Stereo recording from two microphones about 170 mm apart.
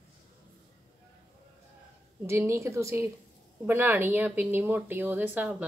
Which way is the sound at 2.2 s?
15° right (ahead or behind).